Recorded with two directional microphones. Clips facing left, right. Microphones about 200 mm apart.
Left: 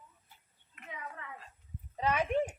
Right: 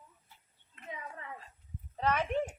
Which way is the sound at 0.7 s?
30° right (ahead or behind).